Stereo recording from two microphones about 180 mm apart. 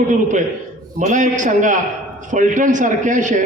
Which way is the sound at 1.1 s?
45° right (ahead or behind).